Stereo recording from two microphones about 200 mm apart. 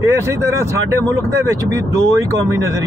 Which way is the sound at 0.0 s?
15° right (ahead or behind).